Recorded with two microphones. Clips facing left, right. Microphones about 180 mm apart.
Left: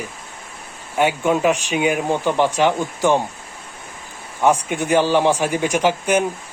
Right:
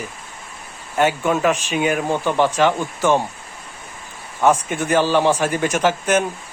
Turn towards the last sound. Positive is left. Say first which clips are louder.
# even
turn(degrees=15)  # may be behind; listen again after turning